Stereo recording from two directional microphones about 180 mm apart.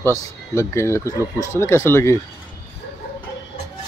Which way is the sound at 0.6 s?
15° left (ahead or behind).